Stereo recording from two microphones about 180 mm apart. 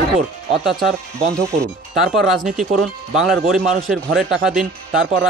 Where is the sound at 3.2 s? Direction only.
Centre (ahead or behind).